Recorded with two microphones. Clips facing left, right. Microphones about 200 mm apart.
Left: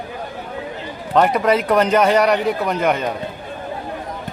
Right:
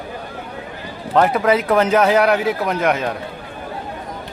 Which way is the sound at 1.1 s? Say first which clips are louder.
Even; centre (ahead or behind).